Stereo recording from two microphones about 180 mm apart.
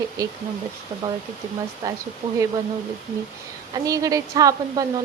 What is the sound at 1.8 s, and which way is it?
Speech, 20° right (ahead or behind).